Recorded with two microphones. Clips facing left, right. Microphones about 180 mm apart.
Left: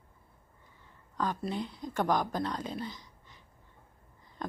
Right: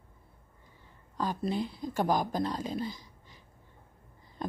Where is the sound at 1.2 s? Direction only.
30° right (ahead or behind).